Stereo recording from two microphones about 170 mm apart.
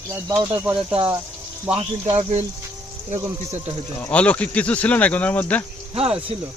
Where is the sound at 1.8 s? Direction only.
35° right (ahead or behind).